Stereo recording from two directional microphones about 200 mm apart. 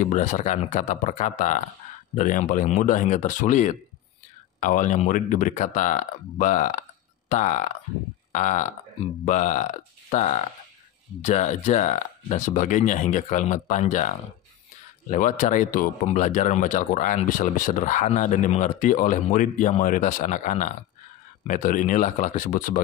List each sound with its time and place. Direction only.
0.0 s speech: 40° left (ahead or behind)